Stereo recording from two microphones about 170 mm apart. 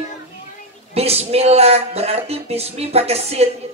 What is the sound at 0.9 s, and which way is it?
Speech, 35° right (ahead or behind).